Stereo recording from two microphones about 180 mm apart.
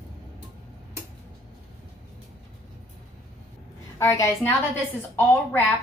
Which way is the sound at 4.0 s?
15° left (ahead or behind).